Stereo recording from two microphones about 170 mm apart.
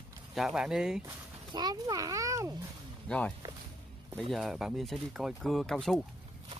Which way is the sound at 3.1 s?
10° left (ahead or behind).